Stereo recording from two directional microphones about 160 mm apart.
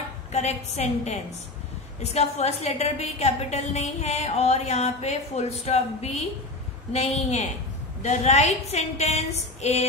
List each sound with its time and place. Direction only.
0.3 s a woman's voice: 40° left (ahead or behind)